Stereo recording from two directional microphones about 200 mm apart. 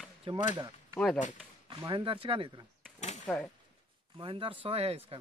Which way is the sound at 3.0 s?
35° left (ahead or behind).